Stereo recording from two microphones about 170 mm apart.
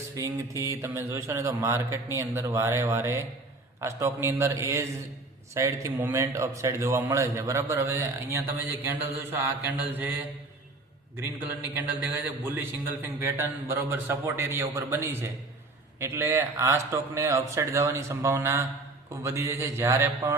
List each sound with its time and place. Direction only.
0.6 s a man's voice: 15° right (ahead or behind)
11.7 s a man's voice: 10° right (ahead or behind)